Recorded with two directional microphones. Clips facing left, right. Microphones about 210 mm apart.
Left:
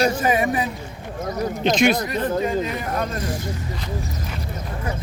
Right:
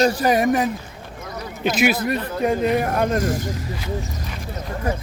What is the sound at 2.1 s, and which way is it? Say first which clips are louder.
Speech: right 1 dB; 55° right (ahead or behind).